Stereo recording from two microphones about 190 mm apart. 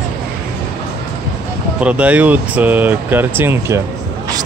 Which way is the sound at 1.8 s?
5° right (ahead or behind).